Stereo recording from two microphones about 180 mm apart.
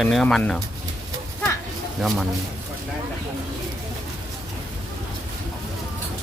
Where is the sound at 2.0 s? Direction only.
Centre (ahead or behind).